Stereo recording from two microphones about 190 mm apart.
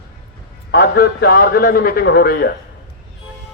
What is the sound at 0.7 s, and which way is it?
A man's voice, 55° left (ahead or behind).